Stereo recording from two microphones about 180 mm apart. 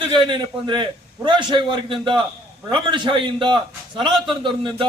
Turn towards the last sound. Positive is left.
turn(degrees=-25)  # may be behind; listen again after turning